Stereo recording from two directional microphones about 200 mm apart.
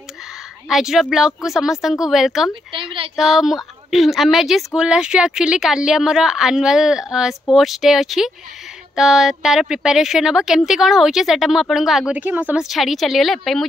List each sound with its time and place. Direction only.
0.7 s speech: centre (ahead or behind)
2.7 s a woman's voice: 25° right (ahead or behind)
3.2 s speech: centre (ahead or behind)